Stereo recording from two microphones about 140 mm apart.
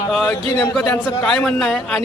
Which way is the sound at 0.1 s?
5° left (ahead or behind).